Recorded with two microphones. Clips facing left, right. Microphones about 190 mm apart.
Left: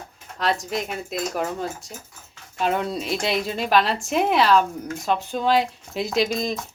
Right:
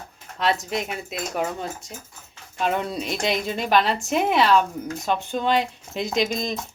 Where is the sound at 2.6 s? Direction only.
Centre (ahead or behind).